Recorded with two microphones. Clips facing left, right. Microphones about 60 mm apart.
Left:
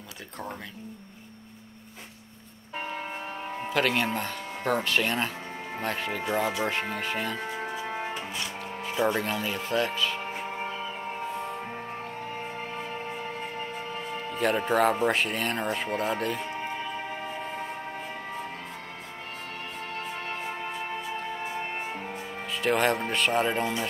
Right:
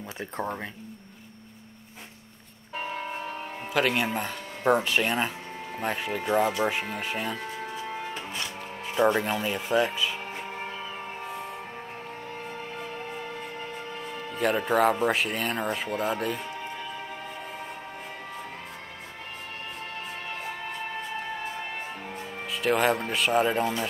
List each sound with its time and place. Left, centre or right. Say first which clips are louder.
3.7 s speech: right 1 dB; centre
7.3 s music: left 2 dB; left
8.8 s speech: right 3 dB; centre
10.5 s music: left 2 dB; centre
14.3 s music: even; centre
14.7 s speech: right 1 dB; centre
22.5 s speech: right 1 dB; centre
23.6 s a man's voice: right 1 dB; centre